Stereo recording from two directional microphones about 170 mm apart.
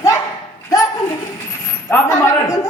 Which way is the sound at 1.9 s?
15° left (ahead or behind).